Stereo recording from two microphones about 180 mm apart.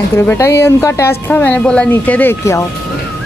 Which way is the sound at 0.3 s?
15° left (ahead or behind).